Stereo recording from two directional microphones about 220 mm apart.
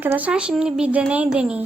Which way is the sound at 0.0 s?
10° right (ahead or behind).